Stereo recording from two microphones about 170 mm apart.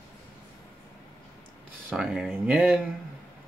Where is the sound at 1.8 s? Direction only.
5° right (ahead or behind).